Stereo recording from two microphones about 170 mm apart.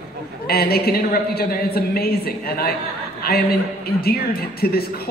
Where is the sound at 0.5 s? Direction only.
65° left (ahead or behind).